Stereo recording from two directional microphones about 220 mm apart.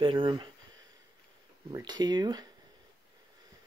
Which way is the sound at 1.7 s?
20° right (ahead or behind).